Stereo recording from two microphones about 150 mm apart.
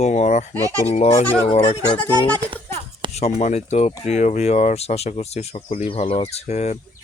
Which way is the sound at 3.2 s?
45° left (ahead or behind).